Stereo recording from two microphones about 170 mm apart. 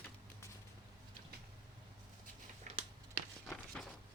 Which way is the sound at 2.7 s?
45° right (ahead or behind).